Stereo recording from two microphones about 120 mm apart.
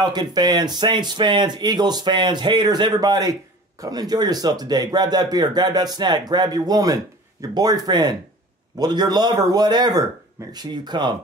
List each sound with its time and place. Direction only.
0.0 s speech: 35° right (ahead or behind)